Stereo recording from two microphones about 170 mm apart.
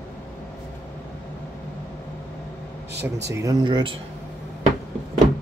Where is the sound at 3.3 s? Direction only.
20° right (ahead or behind).